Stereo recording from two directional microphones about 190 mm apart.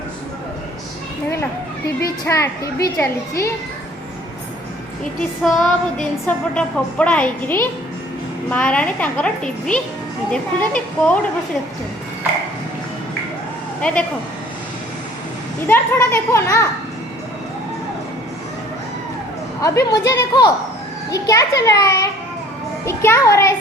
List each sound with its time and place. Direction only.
2.0 s a woman's voice: 15° left (ahead or behind)
5.4 s a woman's voice: centre (ahead or behind)
15.6 s a woman's voice: 10° left (ahead or behind)
19.6 s a woman's voice: 15° left (ahead or behind)